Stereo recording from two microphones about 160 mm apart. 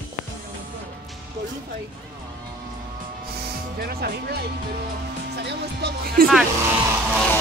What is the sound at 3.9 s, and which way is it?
Speech, 75° right (ahead or behind).